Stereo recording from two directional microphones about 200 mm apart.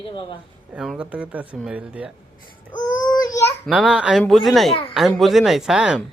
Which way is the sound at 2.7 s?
40° left (ahead or behind).